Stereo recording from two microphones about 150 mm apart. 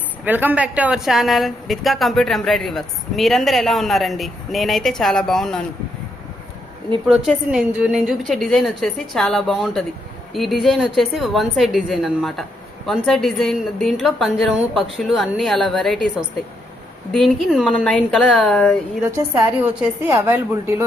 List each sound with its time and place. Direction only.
0.3 s a woman's voice: 10° right (ahead or behind)
7.1 s a woman's voice: 5° right (ahead or behind)
17.1 s a woman's voice: centre (ahead or behind)
19.0 s a woman's voice: 15° right (ahead or behind)